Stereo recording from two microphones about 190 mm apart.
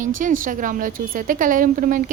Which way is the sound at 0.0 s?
45° right (ahead or behind).